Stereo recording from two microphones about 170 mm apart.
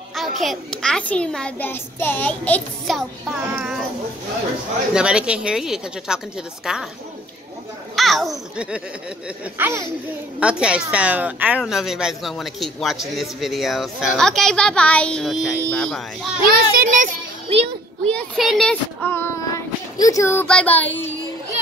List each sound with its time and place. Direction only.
0.4 s a woman's voice: centre (ahead or behind)
3.5 s a woman's voice: 5° right (ahead or behind)
4.9 s a woman's voice: 5° right (ahead or behind)
7.9 s a child's voice: centre (ahead or behind)
16.4 s a child's voice: 60° right (ahead or behind)
18.0 s a child's voice: 5° left (ahead or behind)
19.0 s child singing: 15° left (ahead or behind)